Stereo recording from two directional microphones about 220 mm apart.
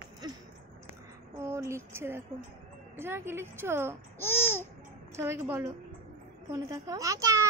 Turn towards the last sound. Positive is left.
turn(degrees=-15)  # may be behind; listen again after turning